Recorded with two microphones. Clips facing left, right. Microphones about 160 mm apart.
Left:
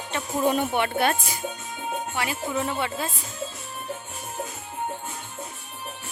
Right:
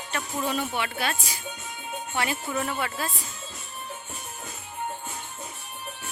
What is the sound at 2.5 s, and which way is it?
Speech, 20° left (ahead or behind).